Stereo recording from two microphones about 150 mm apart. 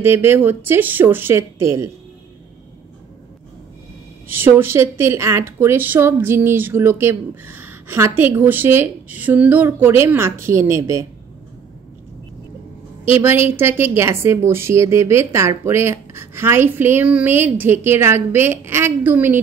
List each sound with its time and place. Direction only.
0.0 s speech: 15° right (ahead or behind)
4.3 s speech: 15° right (ahead or behind)
13.2 s speech: 15° right (ahead or behind)